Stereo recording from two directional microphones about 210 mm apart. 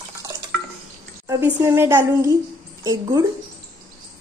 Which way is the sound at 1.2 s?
10° right (ahead or behind).